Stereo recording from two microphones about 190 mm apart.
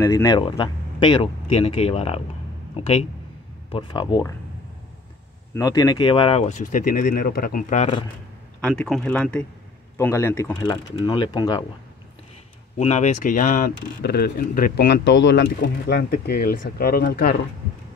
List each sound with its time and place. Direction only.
0.0 s speech: 15° left (ahead or behind)
5.5 s speech: 20° left (ahead or behind); by 7.9 s 45° left (ahead or behind)
8.6 s speech: 5° left (ahead or behind); by 11.6 s 20° left (ahead or behind)
12.7 s speech: 35° left (ahead or behind); by 17.3 s 50° left (ahead or behind)